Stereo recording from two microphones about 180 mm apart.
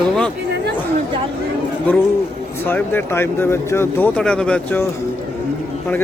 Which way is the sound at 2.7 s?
10° left (ahead or behind).